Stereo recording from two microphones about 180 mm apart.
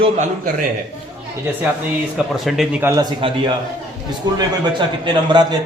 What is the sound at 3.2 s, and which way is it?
Speech, 30° right (ahead or behind).